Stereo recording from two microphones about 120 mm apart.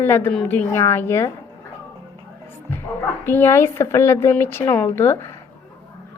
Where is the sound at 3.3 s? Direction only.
20° left (ahead or behind).